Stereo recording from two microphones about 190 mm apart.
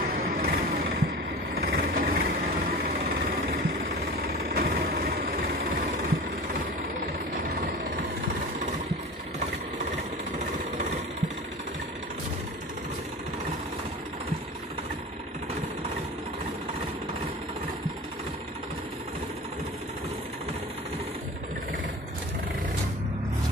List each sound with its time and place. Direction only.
0.4 s music: 50° right (ahead or behind)
1.5 s vehicle: 55° right (ahead or behind)